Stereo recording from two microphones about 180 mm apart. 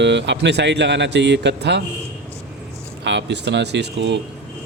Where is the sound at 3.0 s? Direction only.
75° right (ahead or behind).